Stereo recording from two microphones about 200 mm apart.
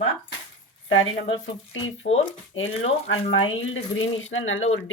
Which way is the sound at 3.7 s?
75° left (ahead or behind).